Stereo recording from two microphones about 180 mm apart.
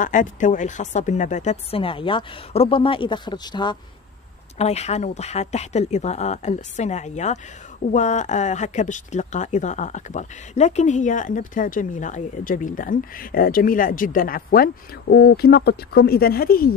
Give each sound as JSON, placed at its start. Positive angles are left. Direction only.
{"t": 0.0, "sound": "speech", "side_deg": 45}
{"t": 4.6, "sound": "speech", "side_deg": 35}